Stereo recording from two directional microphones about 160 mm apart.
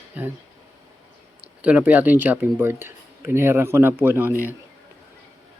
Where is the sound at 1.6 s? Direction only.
10° right (ahead or behind).